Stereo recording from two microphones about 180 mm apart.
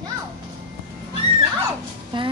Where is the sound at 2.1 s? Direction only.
25° right (ahead or behind).